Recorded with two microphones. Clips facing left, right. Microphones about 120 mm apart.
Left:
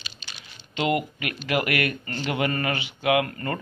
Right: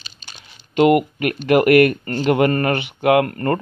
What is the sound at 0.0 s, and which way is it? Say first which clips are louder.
Speech: right 1 dB; 50° right (ahead or behind).